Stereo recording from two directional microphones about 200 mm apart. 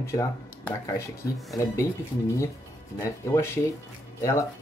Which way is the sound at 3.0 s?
15° left (ahead or behind).